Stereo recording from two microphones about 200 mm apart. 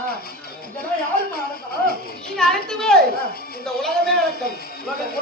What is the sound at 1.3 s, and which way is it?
Music, 50° left (ahead or behind).